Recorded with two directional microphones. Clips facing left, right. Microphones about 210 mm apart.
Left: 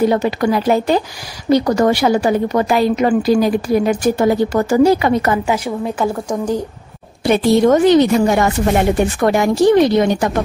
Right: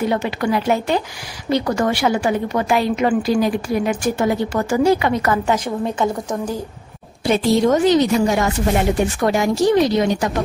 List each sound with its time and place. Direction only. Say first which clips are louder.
0.0 s a woman's voice: left 5 dB; 40° left (ahead or behind)
5.9 s speech: left 2 dB; 10° left (ahead or behind)
7.2 s speech: left 4 dB; 60° left (ahead or behind)